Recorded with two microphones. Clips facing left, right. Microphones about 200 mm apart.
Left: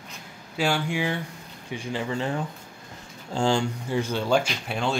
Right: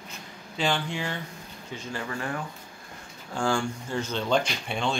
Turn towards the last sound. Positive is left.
turn(degrees=5)  # may be behind; listen again after turning